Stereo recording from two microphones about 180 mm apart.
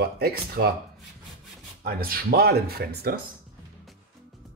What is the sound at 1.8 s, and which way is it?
Speech, 55° right (ahead or behind).